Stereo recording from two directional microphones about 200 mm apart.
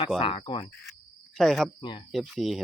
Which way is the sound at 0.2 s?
25° left (ahead or behind).